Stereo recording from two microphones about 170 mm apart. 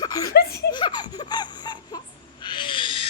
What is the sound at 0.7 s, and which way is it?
Giggle, 25° left (ahead or behind).